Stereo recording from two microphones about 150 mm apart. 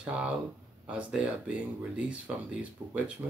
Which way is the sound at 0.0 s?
5° right (ahead or behind).